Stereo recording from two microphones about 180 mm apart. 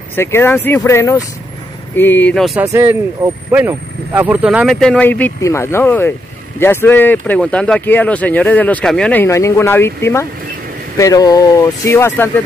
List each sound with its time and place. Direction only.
0.1 s speech: 15° left (ahead or behind)
2.6 s speech: 15° right (ahead or behind); by 12.3 s 15° left (ahead or behind)